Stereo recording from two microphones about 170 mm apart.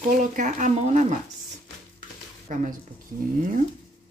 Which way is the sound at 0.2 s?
45° right (ahead or behind).